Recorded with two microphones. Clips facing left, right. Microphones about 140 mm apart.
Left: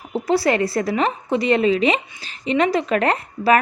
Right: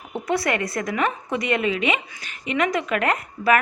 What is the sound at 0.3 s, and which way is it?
A woman's voice, 30° left (ahead or behind).